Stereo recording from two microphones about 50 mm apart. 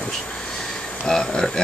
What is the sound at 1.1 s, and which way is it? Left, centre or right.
Speech, centre.